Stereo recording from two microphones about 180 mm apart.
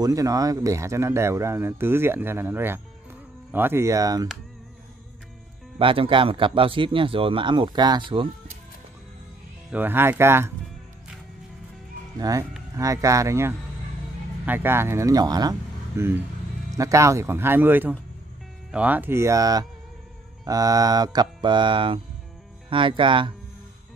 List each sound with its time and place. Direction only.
0.0 s speech: 20° right (ahead or behind)
5.8 s speech: 30° right (ahead or behind)
9.7 s speech: 10° right (ahead or behind)
12.2 s speech: 20° right (ahead or behind)